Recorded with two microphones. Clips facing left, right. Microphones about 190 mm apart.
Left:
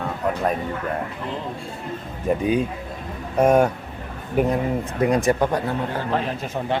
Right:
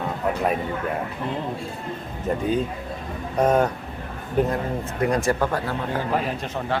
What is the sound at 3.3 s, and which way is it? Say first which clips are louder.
Speech: left 3 dB; 10° left (ahead or behind).